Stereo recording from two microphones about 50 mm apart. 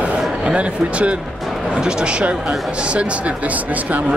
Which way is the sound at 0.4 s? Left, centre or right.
Right.